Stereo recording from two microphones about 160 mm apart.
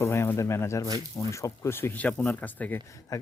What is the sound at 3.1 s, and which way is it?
Speech, 20° left (ahead or behind).